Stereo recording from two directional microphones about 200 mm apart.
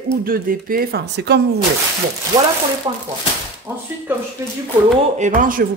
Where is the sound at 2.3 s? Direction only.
20° right (ahead or behind).